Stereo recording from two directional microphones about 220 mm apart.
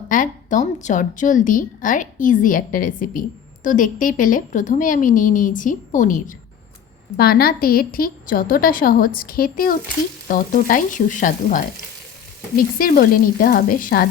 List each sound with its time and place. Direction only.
0.1 s a woman's voice: 35° left (ahead or behind)
12.8 s speech: 40° left (ahead or behind)